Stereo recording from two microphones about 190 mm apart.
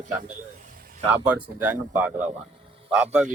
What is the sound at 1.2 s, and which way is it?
Speech, 10° right (ahead or behind).